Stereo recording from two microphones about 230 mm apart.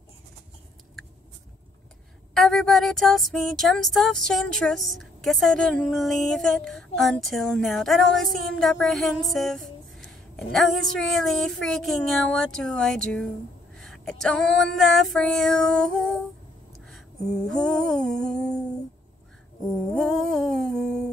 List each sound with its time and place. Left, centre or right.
2.3 s speech: centre
17.5 s speech: centre
19.9 s humming: centre